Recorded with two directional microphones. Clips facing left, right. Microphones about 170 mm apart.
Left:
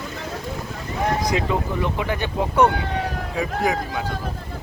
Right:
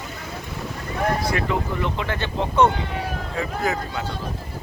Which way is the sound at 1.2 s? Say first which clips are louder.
Left 1 dB; 15° left (ahead or behind).